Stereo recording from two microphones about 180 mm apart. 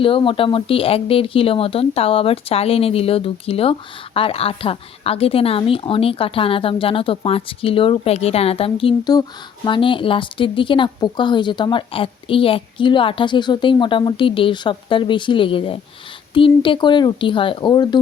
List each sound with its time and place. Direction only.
0.0 s a woman's voice: 30° left (ahead or behind)